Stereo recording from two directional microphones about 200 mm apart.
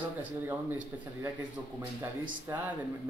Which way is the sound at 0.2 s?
10° right (ahead or behind).